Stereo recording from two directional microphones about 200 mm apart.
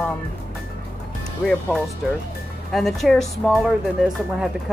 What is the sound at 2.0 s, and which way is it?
Speech, centre (ahead or behind).